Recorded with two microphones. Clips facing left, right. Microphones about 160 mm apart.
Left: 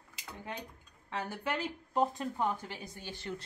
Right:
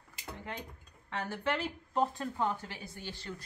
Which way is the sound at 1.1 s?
15° left (ahead or behind).